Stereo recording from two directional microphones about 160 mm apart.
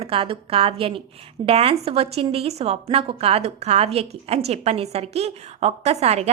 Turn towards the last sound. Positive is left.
turn(degrees=-40)  # may be behind; listen again after turning